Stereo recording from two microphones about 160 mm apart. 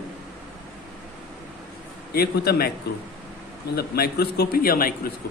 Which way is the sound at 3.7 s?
75° left (ahead or behind).